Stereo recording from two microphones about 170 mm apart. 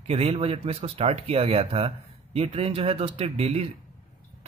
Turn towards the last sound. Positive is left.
turn(degrees=-35)  # may be behind; listen again after turning